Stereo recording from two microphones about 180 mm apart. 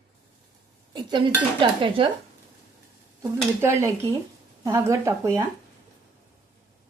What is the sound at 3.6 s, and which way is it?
Speech, 15° right (ahead or behind).